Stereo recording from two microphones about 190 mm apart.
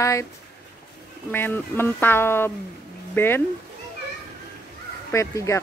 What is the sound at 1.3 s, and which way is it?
Speech, 10° left (ahead or behind).